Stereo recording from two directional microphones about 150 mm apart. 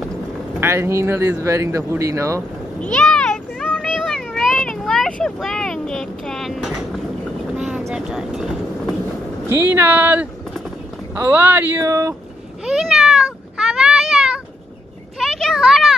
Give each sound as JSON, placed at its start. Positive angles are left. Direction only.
{"t": 0.6, "sound": "speech", "side_deg": -15}
{"t": 2.8, "sound": "a sound", "side_deg": 5}
{"t": 7.5, "sound": "vehicle", "side_deg": -5}
{"t": 7.9, "sound": "speech", "side_deg": -5}
{"t": 9.7, "sound": "speech", "side_deg": -15}
{"t": 12.6, "sound": "cat", "side_deg": -5}
{"t": 15.1, "sound": "a sound", "side_deg": 0}